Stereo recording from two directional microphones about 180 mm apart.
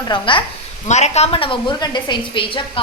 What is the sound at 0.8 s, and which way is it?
A woman's voice, 40° left (ahead or behind).